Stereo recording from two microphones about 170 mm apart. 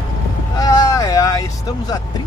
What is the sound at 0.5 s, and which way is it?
Speech, 20° left (ahead or behind).